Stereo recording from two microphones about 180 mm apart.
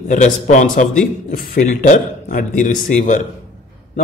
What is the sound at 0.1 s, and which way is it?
Speech, 45° left (ahead or behind).